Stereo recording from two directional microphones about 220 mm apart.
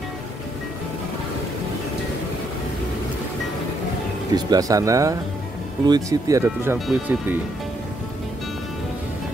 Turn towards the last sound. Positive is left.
turn(degrees=-5)  # may be behind; listen again after turning